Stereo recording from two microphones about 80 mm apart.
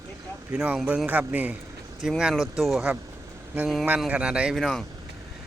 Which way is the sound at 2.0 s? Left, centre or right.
Centre.